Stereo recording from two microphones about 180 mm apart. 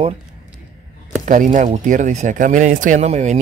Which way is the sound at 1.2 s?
45° right (ahead or behind).